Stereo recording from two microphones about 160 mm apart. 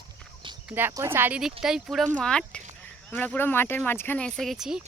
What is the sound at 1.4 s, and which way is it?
Speech, 5° right (ahead or behind).